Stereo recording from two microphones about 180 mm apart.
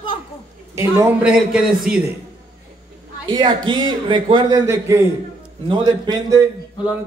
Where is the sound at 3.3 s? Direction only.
25° right (ahead or behind).